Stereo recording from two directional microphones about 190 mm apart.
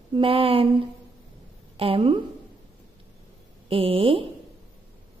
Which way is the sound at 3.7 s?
30° right (ahead or behind).